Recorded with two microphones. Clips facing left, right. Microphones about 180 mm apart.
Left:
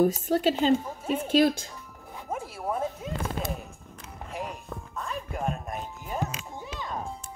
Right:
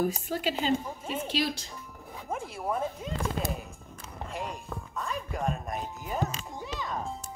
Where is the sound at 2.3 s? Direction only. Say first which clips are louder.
Left 1 dB; 5° left (ahead or behind).